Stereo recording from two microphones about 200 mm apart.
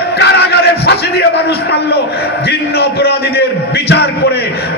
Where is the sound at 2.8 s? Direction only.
55° left (ahead or behind).